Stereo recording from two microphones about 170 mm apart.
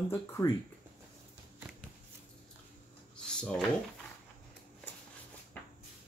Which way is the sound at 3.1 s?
5° left (ahead or behind).